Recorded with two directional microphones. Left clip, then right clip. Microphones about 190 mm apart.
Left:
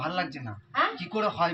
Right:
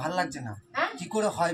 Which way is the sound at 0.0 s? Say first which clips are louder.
Right 1 dB; 20° right (ahead or behind).